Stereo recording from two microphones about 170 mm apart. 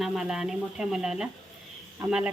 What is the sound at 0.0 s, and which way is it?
Speech, centre (ahead or behind).